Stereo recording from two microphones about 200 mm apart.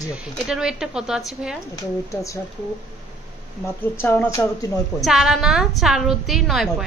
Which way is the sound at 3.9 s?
10° left (ahead or behind).